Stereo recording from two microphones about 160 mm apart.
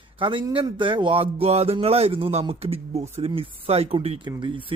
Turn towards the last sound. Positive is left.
turn(degrees=-30)  # may be behind; listen again after turning